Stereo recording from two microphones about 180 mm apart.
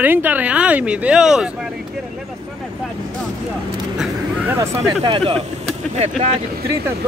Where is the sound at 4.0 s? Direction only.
10° right (ahead or behind).